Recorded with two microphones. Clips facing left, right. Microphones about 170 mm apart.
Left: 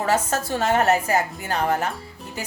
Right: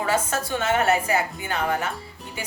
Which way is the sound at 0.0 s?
40° left (ahead or behind).